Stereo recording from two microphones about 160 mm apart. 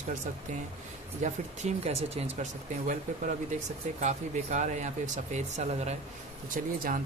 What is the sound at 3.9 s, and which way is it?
Speech, 50° right (ahead or behind).